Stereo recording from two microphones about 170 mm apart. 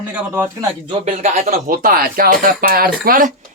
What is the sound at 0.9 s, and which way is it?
Speech, 35° right (ahead or behind).